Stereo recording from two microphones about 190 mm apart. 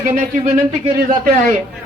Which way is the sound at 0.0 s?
45° right (ahead or behind).